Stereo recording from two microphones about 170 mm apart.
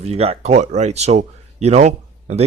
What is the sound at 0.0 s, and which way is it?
Speech, 35° right (ahead or behind).